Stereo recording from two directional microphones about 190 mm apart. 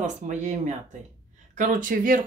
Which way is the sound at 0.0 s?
40° right (ahead or behind).